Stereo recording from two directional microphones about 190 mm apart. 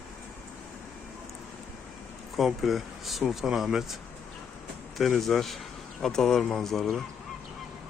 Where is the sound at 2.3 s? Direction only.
Centre (ahead or behind).